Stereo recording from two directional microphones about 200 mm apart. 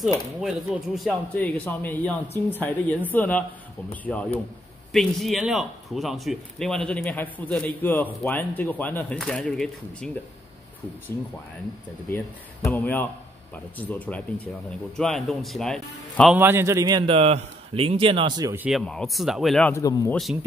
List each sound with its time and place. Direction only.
0.4 s speech: centre (ahead or behind)
12.6 s speech: 10° left (ahead or behind)
16.3 s a man's voice: 10° right (ahead or behind)
18.7 s speech: centre (ahead or behind)
19.7 s speech: 15° left (ahead or behind)